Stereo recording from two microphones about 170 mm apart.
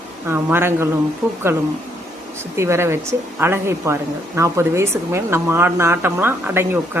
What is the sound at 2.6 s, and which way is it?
A woman's voice, 15° right (ahead or behind).